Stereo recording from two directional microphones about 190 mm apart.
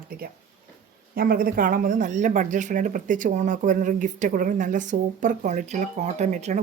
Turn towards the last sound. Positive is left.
turn(degrees=-40)  # may be behind; listen again after turning